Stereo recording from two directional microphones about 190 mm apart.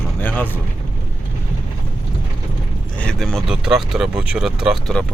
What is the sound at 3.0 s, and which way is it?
Speech, 5° left (ahead or behind).